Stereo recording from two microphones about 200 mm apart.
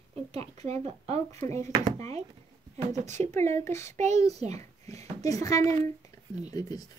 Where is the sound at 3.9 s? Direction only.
35° right (ahead or behind).